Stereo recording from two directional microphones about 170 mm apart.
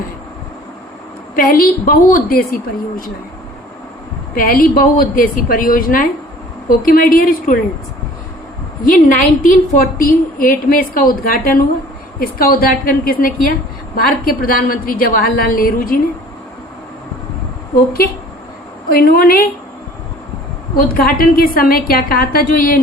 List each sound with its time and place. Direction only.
1.4 s a woman's voice: 55° left (ahead or behind)
4.4 s a woman's voice: 60° left (ahead or behind)
8.8 s a woman's voice: 55° left (ahead or behind)
18.9 s a woman's voice: 60° left (ahead or behind)
20.7 s a woman's voice: 60° left (ahead or behind)